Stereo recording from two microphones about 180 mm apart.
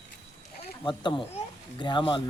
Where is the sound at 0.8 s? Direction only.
25° left (ahead or behind).